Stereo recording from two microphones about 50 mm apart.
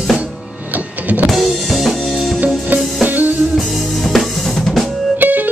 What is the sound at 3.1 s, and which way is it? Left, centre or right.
Music, right.